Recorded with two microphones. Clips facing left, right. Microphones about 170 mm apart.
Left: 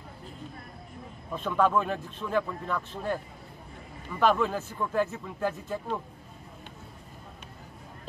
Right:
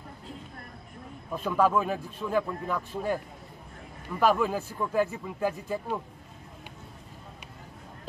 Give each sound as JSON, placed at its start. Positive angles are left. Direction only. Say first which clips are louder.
{"t": 1.3, "sound": "a man's voice", "louder": "right 1 dB", "side_deg": -5}